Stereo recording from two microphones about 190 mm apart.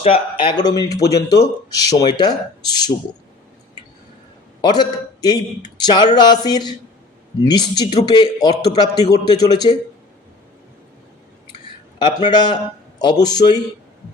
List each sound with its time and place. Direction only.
0.0 s a man's voice: 30° left (ahead or behind)
4.6 s a man's voice: 25° left (ahead or behind)
11.9 s a man's voice: 25° left (ahead or behind)